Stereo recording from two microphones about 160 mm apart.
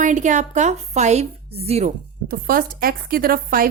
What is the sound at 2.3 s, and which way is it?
Speech, 60° right (ahead or behind).